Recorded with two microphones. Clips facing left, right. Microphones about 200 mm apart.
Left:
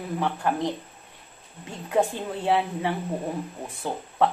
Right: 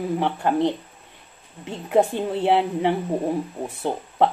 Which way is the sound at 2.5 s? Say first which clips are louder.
Right 4 dB; 20° right (ahead or behind).